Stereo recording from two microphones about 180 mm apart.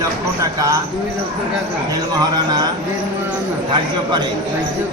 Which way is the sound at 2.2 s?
20° right (ahead or behind).